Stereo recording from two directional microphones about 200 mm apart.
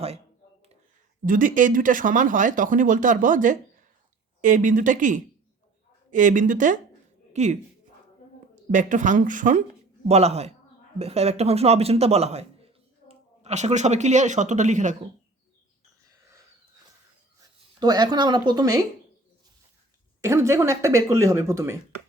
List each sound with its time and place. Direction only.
1.2 s speech: 40° right (ahead or behind)
8.7 s speech: 40° right (ahead or behind)
17.7 s speech: 20° right (ahead or behind)
20.2 s speech: 15° right (ahead or behind)